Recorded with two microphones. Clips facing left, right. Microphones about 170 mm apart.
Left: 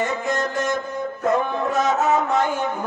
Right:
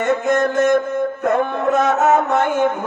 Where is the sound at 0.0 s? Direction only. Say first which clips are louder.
Right 7 dB; 55° right (ahead or behind).